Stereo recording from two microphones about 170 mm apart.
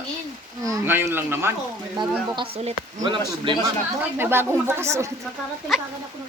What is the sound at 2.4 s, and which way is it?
Speech, 35° right (ahead or behind).